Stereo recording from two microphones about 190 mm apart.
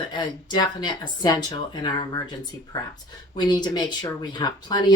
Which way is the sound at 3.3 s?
20° left (ahead or behind).